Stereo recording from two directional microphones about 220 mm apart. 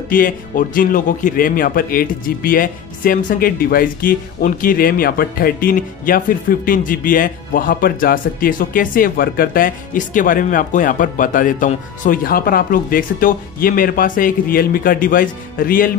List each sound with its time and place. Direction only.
0.1 s a man's voice: 40° left (ahead or behind)